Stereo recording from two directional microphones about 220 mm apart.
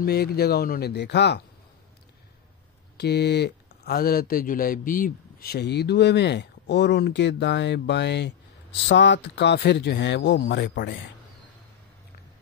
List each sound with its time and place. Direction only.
0.0 s speech: 45° left (ahead or behind)
3.0 s speech: 50° left (ahead or behind)